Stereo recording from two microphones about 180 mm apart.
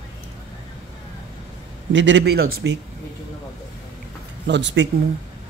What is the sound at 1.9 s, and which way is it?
Speech, 90° right.